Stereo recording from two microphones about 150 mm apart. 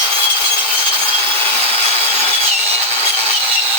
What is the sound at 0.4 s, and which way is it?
Wood, 35° right (ahead or behind).